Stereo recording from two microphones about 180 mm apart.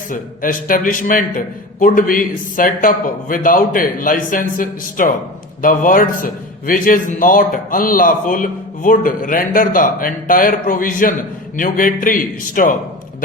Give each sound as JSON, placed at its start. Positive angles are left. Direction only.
{"t": 0.1, "sound": "a man's voice", "side_deg": 50}